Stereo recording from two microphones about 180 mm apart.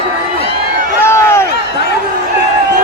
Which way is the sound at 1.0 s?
15° left (ahead or behind).